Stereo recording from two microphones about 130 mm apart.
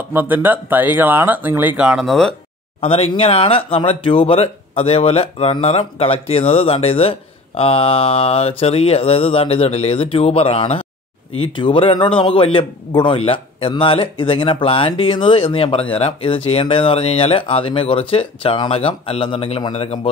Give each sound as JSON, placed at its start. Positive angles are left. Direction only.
{"t": 0.1, "sound": "speech", "side_deg": -15}
{"t": 2.8, "sound": "speech", "side_deg": 45}
{"t": 19.7, "sound": "speech", "side_deg": 60}